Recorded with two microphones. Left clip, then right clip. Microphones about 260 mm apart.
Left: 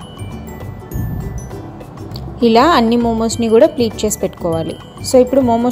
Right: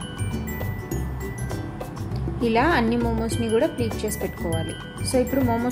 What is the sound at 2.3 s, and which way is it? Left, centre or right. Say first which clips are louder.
Speech: left 10 dB; left.